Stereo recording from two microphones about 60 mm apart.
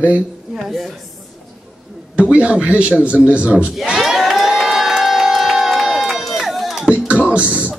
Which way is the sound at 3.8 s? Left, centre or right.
Centre.